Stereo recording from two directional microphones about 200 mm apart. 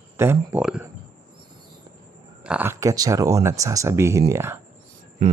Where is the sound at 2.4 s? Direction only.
10° right (ahead or behind).